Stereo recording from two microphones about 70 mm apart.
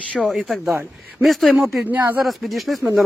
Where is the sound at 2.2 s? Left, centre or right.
Centre.